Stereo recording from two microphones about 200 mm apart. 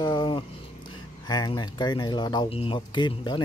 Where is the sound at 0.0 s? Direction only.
20° left (ahead or behind).